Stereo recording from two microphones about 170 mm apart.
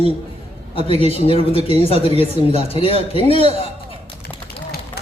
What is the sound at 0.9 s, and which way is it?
Speech, 30° left (ahead or behind).